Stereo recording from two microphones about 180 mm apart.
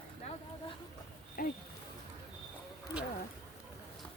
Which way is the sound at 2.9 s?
5° right (ahead or behind).